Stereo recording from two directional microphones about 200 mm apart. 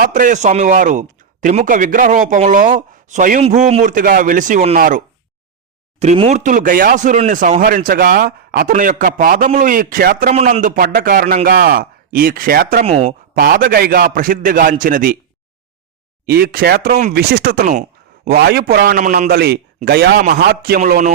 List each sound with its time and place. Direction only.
0.0 s a man's voice: 40° right (ahead or behind)
10.3 s a man's voice: 35° right (ahead or behind)
12.8 s a man's voice: 30° right (ahead or behind)
13.4 s a man's voice: 45° right (ahead or behind)
16.2 s a man's voice: 50° right (ahead or behind)